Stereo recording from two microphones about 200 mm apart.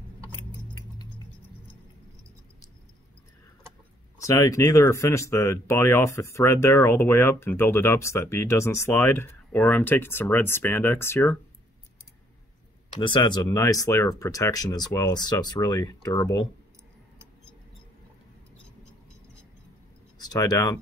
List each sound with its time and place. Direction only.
4.2 s speech: 15° left (ahead or behind)
13.0 s speech: 20° left (ahead or behind)
20.2 s speech: 20° left (ahead or behind)